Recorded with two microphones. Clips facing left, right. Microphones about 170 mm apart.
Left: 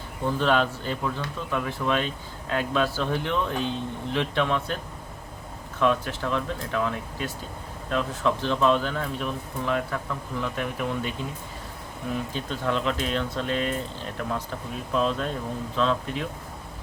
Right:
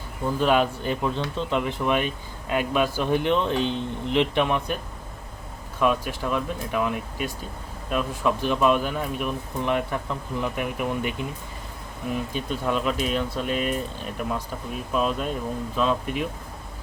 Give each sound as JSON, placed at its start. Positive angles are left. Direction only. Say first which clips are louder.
{"t": 0.3, "sound": "speech", "louder": "right 2 dB", "side_deg": -10}
{"t": 5.8, "sound": "speech", "louder": "right 1 dB", "side_deg": -10}
{"t": 12.3, "sound": "speech", "louder": "right 2 dB", "side_deg": -10}